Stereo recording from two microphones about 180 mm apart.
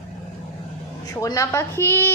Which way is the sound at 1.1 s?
20° left (ahead or behind).